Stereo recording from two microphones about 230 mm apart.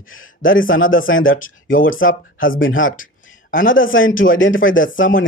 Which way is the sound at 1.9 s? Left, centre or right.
Left.